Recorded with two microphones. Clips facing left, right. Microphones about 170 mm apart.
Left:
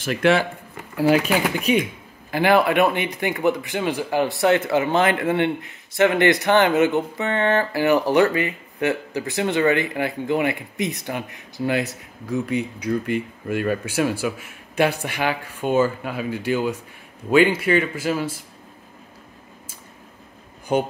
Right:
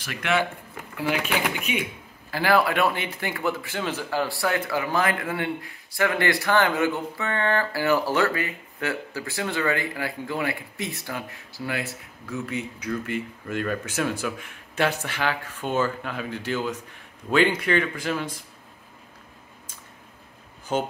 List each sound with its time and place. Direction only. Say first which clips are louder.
0.0 s speech: left 7 dB; 30° left (ahead or behind)
2.3 s speech: left 4 dB; 20° left (ahead or behind)
20.7 s speech: left 5 dB; 15° left (ahead or behind)